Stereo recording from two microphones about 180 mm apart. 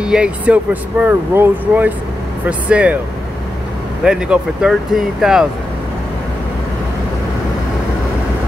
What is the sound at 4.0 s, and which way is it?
Speech, 5° right (ahead or behind).